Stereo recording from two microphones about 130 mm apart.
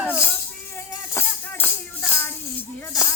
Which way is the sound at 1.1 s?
15° left (ahead or behind).